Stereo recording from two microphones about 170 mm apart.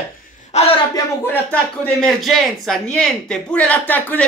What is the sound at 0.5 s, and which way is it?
Speech, 40° left (ahead or behind).